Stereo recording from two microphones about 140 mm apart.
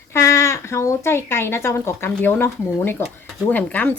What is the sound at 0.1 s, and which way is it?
Speech, 20° left (ahead or behind).